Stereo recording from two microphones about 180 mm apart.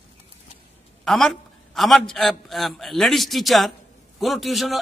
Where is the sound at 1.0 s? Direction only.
Centre (ahead or behind).